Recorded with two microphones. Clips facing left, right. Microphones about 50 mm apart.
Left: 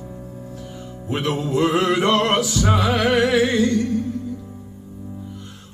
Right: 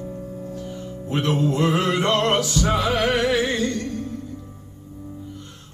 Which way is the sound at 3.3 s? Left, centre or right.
Centre.